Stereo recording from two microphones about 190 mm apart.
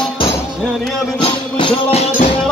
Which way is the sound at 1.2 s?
25° left (ahead or behind).